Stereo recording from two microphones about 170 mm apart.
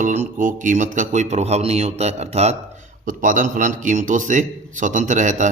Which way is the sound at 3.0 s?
50° right (ahead or behind).